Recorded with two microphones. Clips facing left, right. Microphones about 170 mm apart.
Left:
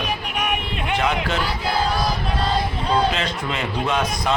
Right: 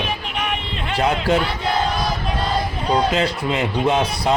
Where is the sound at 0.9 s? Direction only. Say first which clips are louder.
Right 4 dB; 30° right (ahead or behind).